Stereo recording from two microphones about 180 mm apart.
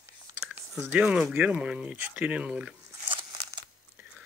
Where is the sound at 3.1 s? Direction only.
25° right (ahead or behind).